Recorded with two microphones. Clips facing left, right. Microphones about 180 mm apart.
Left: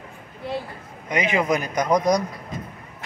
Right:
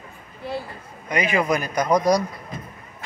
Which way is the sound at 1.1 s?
20° left (ahead or behind).